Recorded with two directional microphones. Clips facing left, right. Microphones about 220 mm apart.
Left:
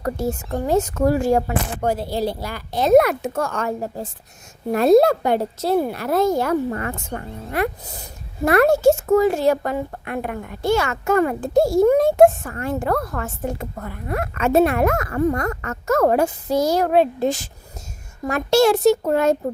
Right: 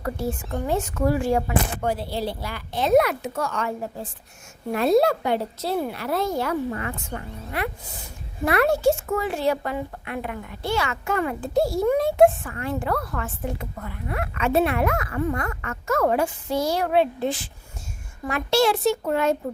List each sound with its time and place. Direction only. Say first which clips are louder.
0.0 s a woman's voice: left 4 dB; 40° left (ahead or behind)